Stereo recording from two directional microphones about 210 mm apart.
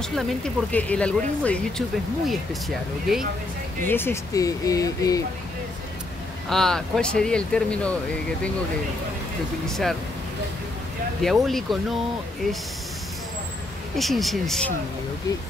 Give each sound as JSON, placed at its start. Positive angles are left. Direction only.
{"t": 0.0, "sound": "speech", "side_deg": 5}
{"t": 3.8, "sound": "speech", "side_deg": 10}
{"t": 6.5, "sound": "speech", "side_deg": 0}
{"t": 9.7, "sound": "speech", "side_deg": 0}
{"t": 11.2, "sound": "speech", "side_deg": 0}
{"t": 13.9, "sound": "speech", "side_deg": 0}